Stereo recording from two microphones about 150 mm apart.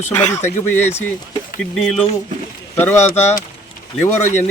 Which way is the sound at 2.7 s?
15° left (ahead or behind).